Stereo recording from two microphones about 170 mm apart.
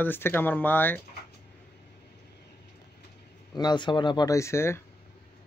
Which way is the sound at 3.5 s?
25° left (ahead or behind).